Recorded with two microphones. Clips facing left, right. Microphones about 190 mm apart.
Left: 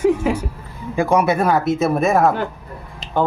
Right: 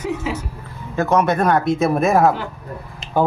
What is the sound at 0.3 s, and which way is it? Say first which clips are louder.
Speech: left 5 dB; 50° left (ahead or behind).